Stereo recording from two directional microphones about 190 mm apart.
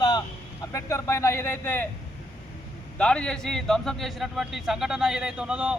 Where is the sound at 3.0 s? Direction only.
5° left (ahead or behind).